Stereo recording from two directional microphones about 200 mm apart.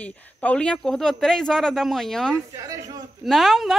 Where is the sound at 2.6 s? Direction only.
15° right (ahead or behind).